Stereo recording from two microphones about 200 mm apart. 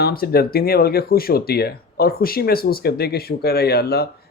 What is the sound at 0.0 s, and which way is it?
Speech, 50° left (ahead or behind).